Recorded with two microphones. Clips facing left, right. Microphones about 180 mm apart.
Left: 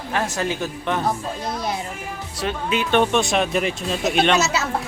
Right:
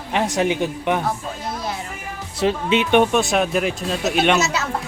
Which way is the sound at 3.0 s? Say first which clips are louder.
Right 2 dB; 5° right (ahead or behind).